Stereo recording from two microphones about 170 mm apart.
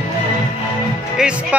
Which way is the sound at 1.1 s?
5° right (ahead or behind).